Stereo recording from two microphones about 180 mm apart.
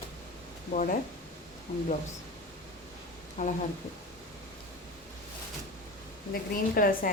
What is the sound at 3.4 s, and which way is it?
Speech, 45° left (ahead or behind).